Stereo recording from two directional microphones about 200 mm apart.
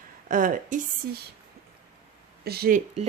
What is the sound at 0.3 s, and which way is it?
Speech, 40° right (ahead or behind).